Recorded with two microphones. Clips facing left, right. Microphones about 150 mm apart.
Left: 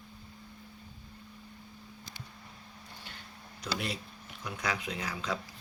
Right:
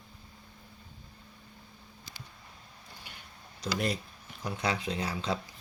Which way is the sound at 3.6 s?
40° right (ahead or behind).